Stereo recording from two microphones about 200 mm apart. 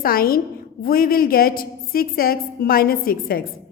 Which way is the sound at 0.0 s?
45° left (ahead or behind).